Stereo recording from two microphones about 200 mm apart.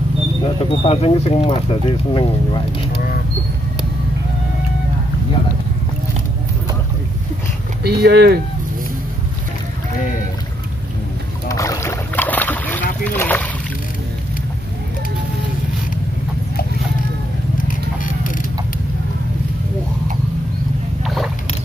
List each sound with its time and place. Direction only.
0.4 s speech: 30° left (ahead or behind)
7.8 s speech: 50° right (ahead or behind)
11.4 s boat: 15° left (ahead or behind)
13.0 s speech: 10° left (ahead or behind)
17.6 s a sound: 40° left (ahead or behind)
21.0 s a sound: centre (ahead or behind)